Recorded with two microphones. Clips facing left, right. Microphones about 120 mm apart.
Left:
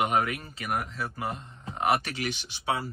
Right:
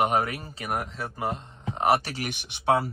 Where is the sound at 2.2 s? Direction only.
60° right (ahead or behind).